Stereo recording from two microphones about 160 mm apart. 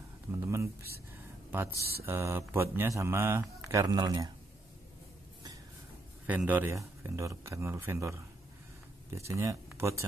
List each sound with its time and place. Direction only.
0.3 s a sound: 15° right (ahead or behind)
1.5 s speech: 10° right (ahead or behind)
6.2 s speech: 10° right (ahead or behind)